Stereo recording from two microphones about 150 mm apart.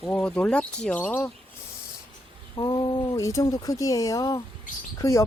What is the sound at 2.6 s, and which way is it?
Speech, 30° left (ahead or behind).